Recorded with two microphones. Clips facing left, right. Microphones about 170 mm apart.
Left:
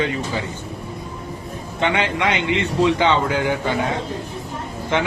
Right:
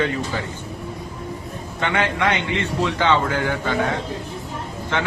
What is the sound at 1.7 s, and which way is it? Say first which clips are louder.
A man's voice: left 1 dB; 20° left (ahead or behind).